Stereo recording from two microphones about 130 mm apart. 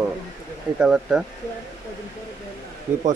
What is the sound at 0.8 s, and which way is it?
Speech, 5° right (ahead or behind).